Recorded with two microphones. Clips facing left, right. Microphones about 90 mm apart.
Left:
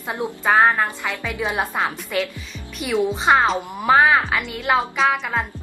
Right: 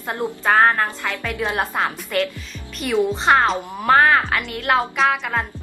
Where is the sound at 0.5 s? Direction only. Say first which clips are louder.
Even; 15° left (ahead or behind).